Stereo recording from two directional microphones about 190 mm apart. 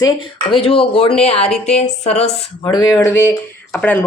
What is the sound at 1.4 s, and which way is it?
Speech, 5° left (ahead or behind).